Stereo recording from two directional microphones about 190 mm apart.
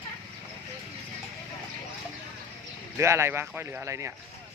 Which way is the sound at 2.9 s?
15° right (ahead or behind).